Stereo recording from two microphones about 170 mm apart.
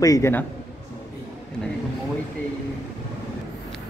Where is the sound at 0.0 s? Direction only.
20° left (ahead or behind).